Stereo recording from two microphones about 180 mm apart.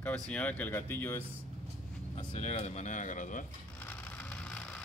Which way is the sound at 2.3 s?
40° left (ahead or behind).